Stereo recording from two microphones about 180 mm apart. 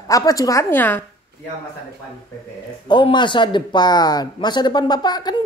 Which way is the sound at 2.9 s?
25° left (ahead or behind).